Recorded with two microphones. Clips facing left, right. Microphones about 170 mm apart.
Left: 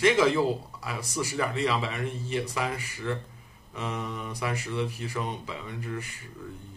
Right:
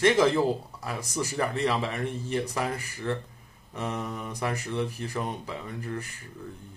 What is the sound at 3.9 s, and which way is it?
Speech, 45° right (ahead or behind).